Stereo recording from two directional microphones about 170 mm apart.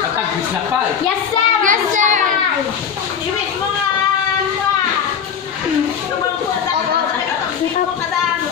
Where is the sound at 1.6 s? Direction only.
50° right (ahead or behind).